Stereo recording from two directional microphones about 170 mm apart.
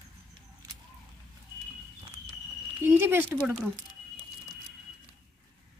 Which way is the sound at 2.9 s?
15° right (ahead or behind).